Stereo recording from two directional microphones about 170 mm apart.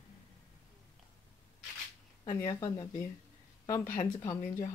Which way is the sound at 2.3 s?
20° left (ahead or behind).